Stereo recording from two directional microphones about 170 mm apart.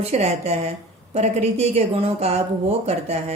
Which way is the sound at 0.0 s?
40° right (ahead or behind).